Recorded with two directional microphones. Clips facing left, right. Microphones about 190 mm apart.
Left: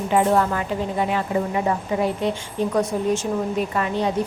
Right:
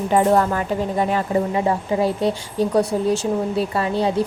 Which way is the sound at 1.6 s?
35° right (ahead or behind).